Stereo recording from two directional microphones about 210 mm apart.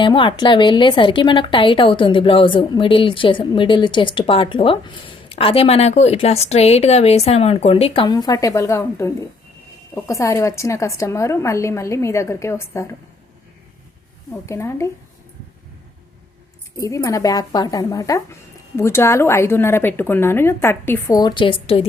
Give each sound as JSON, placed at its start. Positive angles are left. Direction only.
{"t": 0.0, "sound": "a woman's voice", "side_deg": 25}
{"t": 14.4, "sound": "speech", "side_deg": 15}
{"t": 16.7, "sound": "speech", "side_deg": 15}